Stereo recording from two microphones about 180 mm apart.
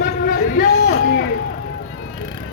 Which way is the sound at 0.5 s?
65° left (ahead or behind).